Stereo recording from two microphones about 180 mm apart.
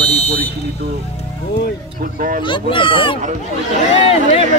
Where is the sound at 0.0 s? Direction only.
35° left (ahead or behind).